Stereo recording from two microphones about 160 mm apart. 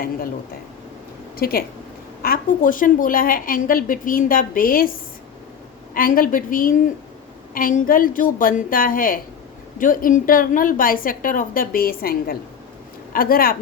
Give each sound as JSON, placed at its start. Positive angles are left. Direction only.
{"t": 1.4, "sound": "a woman's voice", "side_deg": 70}